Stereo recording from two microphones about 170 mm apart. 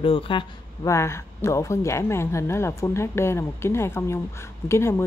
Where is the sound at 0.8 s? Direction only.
15° left (ahead or behind).